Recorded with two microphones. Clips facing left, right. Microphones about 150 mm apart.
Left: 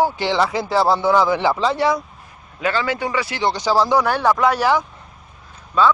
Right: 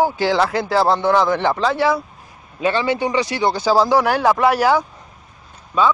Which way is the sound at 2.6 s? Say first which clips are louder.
Right 3 dB; 20° right (ahead or behind).